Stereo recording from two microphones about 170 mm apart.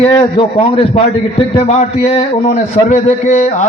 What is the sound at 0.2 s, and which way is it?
A man's voice, 30° left (ahead or behind).